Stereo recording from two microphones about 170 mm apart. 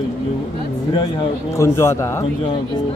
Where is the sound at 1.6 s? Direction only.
15° left (ahead or behind).